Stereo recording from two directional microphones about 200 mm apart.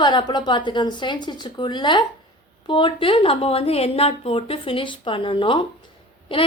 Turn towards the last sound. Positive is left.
turn(degrees=25)  # may be behind; listen again after turning